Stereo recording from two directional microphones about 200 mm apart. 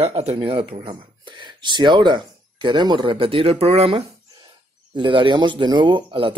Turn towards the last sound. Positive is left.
turn(degrees=-25)  # may be behind; listen again after turning